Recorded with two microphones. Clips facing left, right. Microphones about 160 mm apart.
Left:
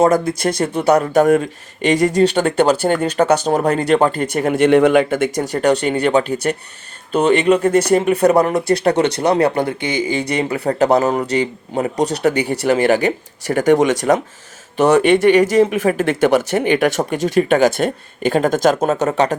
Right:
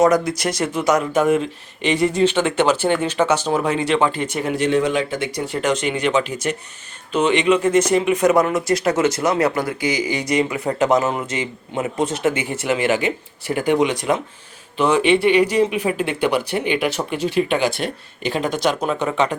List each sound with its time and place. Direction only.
0.8 s speech: 35° left (ahead or behind)